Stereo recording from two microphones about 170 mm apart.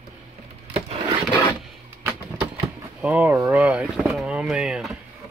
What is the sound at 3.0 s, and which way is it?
Vehicle, 10° right (ahead or behind).